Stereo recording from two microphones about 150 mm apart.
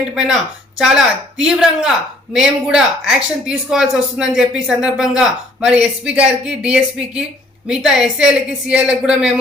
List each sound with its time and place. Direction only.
0.0 s speech: 5° right (ahead or behind)